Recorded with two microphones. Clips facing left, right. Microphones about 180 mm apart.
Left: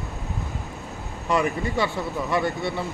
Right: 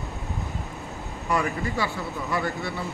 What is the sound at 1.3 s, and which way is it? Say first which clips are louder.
A man's voice: left 3 dB; 20° left (ahead or behind).